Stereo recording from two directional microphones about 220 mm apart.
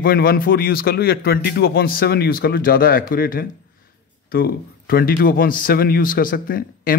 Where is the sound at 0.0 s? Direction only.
45° left (ahead or behind).